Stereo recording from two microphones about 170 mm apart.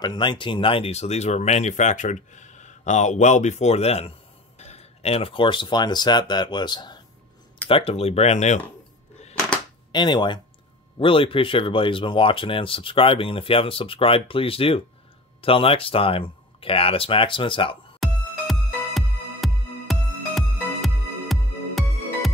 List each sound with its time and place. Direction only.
0.0 s speech: 25° left (ahead or behind); by 8.5 s 40° left (ahead or behind)
9.5 s a sound: 25° left (ahead or behind)
11.0 s speech: 30° left (ahead or behind)
18.0 s music: centre (ahead or behind)